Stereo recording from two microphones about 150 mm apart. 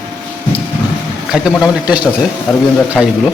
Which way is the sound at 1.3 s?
5° right (ahead or behind).